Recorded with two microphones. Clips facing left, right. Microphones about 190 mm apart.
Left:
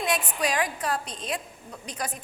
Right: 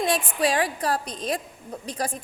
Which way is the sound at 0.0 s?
30° right (ahead or behind).